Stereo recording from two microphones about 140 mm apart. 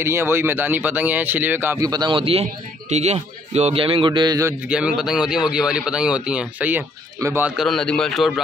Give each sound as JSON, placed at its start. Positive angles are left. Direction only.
{"t": 0.0, "sound": "speech", "side_deg": -15}
{"t": 1.9, "sound": "a man's voice", "side_deg": -30}
{"t": 2.9, "sound": "a man's voice", "side_deg": -55}
{"t": 4.6, "sound": "speech", "side_deg": -5}
{"t": 7.2, "sound": "a man's voice", "side_deg": -20}
{"t": 7.4, "sound": "speech", "side_deg": 0}